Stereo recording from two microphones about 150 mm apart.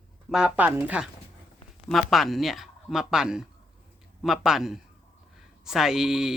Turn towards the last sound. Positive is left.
turn(degrees=0)  # may be behind; listen again after turning